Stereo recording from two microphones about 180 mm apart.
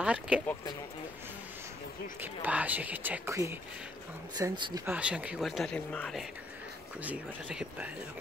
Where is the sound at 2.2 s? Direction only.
10° right (ahead or behind).